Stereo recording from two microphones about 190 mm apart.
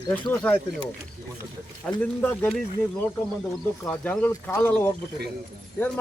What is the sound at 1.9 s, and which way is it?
Speech, 5° left (ahead or behind).